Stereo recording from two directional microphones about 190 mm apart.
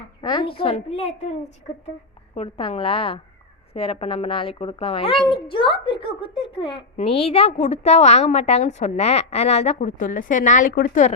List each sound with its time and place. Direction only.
0.2 s a woman's voice: 25° left (ahead or behind)
2.3 s a woman's voice: 30° left (ahead or behind); by 11.1 s 45° left (ahead or behind)